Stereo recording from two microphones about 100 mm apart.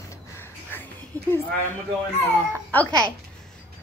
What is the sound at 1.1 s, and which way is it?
Speech, 20° left (ahead or behind).